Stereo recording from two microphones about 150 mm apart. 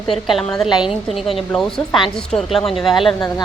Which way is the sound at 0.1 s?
Centre (ahead or behind).